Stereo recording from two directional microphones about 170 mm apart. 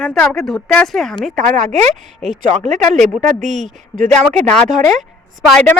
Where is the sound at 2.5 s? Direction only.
45° right (ahead or behind).